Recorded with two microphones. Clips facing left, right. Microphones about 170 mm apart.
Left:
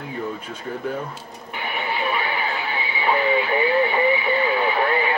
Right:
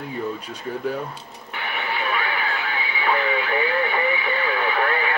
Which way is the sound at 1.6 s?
15° left (ahead or behind).